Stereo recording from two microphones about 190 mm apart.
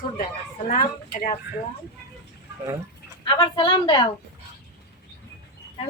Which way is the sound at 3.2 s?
25° left (ahead or behind).